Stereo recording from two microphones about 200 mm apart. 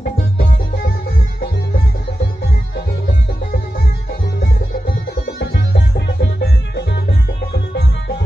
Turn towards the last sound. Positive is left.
turn(degrees=55)  # may be behind; listen again after turning